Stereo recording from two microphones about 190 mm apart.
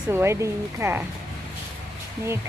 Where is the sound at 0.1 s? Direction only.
10° right (ahead or behind).